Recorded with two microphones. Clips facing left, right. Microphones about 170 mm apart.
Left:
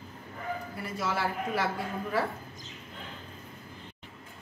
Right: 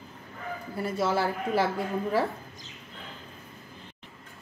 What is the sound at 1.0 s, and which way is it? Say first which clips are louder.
Speech: right 4 dB; 30° right (ahead or behind).